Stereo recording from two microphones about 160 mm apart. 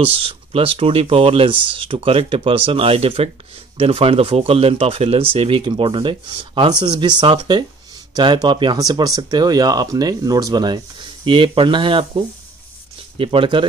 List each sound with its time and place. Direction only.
0.0 s speech: 35° right (ahead or behind)
13.2 s speech: 35° right (ahead or behind)